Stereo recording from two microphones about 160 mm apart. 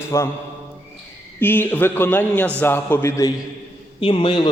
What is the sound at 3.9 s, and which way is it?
Speech, 35° left (ahead or behind).